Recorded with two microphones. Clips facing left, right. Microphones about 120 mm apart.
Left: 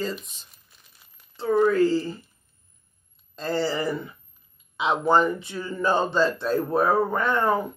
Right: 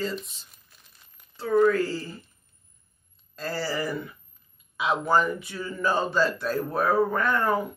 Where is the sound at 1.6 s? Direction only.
25° left (ahead or behind).